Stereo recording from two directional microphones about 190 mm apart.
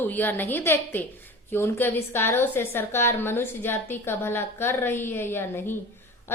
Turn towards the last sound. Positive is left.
turn(degrees=10)  # may be behind; listen again after turning